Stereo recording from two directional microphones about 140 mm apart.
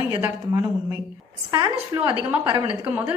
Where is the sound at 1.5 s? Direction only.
30° right (ahead or behind).